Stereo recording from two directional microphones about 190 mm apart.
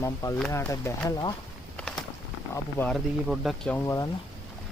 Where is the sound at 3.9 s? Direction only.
20° left (ahead or behind).